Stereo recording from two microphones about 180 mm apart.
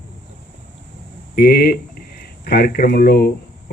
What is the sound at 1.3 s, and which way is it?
A man's voice, 60° left (ahead or behind).